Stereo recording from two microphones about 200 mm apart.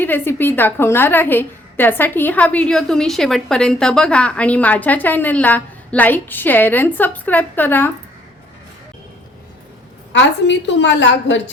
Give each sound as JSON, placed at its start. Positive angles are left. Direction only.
{"t": 0.0, "sound": "a woman's voice", "side_deg": 10}
{"t": 10.1, "sound": "a woman's voice", "side_deg": 65}